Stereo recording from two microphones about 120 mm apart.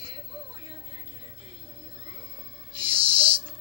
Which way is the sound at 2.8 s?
50° right (ahead or behind).